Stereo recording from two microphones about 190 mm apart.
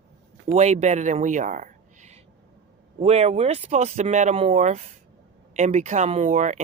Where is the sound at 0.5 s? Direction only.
35° right (ahead or behind).